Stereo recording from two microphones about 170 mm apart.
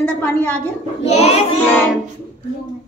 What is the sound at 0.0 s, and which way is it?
Speech, 10° left (ahead or behind).